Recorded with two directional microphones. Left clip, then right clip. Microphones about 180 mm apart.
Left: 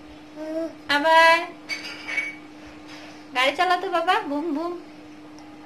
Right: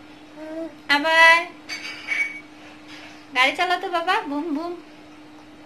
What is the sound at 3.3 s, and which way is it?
A woman's voice, centre (ahead or behind).